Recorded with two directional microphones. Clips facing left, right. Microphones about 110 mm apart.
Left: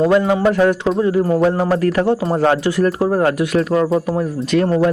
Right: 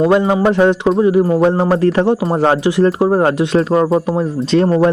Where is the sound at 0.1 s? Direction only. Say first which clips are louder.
Right 2 dB; 25° right (ahead or behind).